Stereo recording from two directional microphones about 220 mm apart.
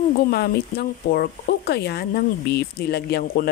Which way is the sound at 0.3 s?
45° left (ahead or behind).